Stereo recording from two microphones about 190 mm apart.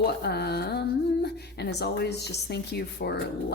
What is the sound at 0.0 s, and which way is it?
A woman's voice, 60° left (ahead or behind).